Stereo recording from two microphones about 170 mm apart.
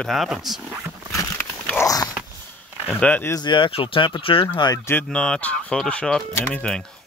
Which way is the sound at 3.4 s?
30° left (ahead or behind).